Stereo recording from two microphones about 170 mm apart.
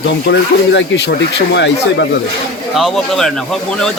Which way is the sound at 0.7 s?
90° left.